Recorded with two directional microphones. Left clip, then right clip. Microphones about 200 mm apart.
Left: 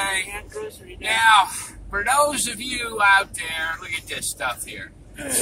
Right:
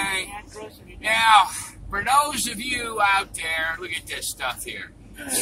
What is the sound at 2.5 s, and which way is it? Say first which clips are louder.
Speech: even; 10° right (ahead or behind).